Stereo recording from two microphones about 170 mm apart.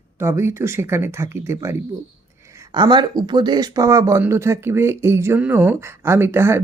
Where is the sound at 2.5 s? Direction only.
25° right (ahead or behind).